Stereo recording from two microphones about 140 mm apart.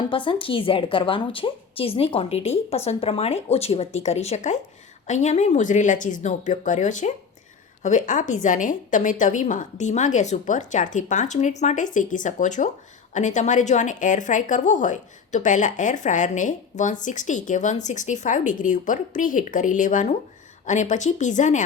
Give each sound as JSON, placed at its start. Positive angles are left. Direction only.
{"t": 0.1, "sound": "a woman's voice", "side_deg": 40}